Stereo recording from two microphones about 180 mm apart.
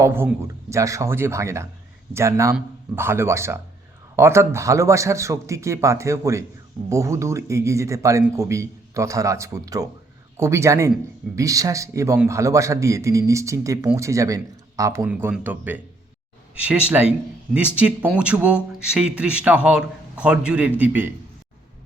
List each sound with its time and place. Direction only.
0.0 s a man's voice: 10° right (ahead or behind)